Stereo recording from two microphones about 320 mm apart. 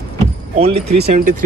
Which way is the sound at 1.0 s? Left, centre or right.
Right.